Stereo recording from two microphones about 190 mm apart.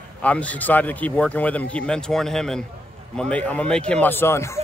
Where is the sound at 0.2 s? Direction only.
5° left (ahead or behind).